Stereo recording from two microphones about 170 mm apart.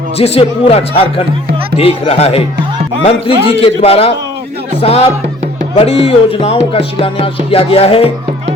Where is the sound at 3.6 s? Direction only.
35° left (ahead or behind).